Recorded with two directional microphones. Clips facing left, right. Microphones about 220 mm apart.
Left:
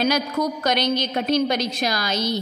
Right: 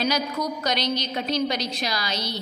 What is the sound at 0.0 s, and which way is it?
A woman's voice, 50° left (ahead or behind).